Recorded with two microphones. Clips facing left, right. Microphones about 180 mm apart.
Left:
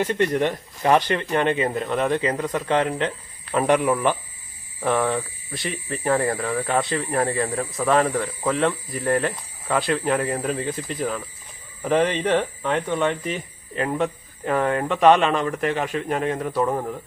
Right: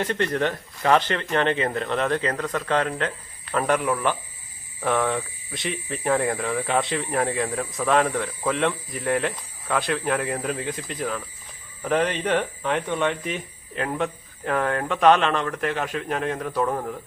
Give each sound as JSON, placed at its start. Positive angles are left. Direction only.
{"t": 0.0, "sound": "speech", "side_deg": 10}